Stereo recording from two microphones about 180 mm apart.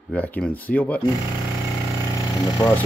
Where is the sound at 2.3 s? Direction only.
20° left (ahead or behind).